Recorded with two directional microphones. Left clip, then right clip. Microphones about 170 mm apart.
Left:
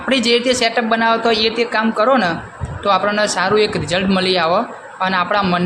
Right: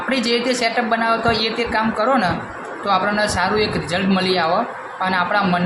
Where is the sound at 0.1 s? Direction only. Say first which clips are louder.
Left 5 dB; 40° left (ahead or behind).